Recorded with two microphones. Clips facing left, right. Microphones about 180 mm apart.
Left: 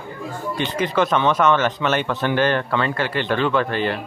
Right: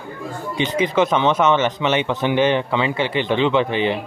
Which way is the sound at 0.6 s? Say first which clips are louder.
Right 3 dB; 15° right (ahead or behind).